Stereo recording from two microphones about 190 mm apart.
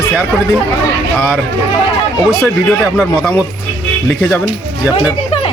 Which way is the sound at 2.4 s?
5° right (ahead or behind).